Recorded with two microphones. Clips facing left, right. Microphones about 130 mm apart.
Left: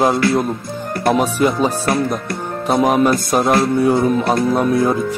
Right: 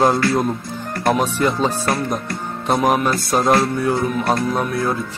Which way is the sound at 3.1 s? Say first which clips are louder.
Left 3 dB; 15° left (ahead or behind).